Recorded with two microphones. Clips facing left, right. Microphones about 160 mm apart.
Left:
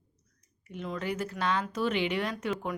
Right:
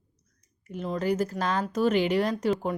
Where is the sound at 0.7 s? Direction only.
35° right (ahead or behind).